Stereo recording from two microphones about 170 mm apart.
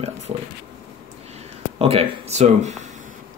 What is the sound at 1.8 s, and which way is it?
Speech, 35° right (ahead or behind).